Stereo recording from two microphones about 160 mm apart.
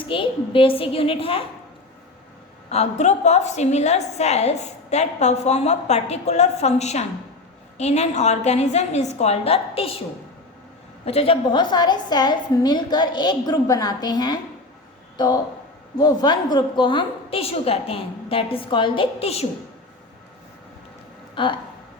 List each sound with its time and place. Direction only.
0.0 s a woman's voice: 30° left (ahead or behind)
2.6 s a woman's voice: 45° left (ahead or behind)
11.0 s a woman's voice: 40° left (ahead or behind)
16.0 s a woman's voice: 25° left (ahead or behind)
21.4 s a woman's voice: 30° left (ahead or behind)